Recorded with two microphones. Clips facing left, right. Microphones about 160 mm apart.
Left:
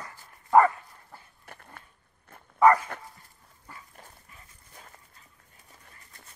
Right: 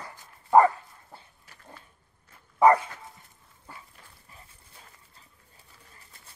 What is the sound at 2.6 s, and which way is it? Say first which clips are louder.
Dog: right 1 dB; 25° right (ahead or behind).